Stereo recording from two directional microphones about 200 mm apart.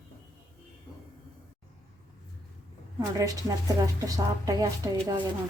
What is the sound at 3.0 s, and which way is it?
A woman's voice, 15° right (ahead or behind).